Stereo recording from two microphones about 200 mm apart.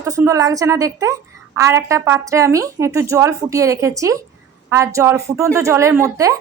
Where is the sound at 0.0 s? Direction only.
15° right (ahead or behind).